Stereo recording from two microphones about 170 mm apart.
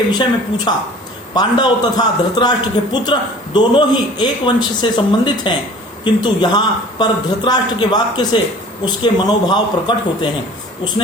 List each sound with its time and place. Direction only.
0.1 s a man's voice: 25° left (ahead or behind)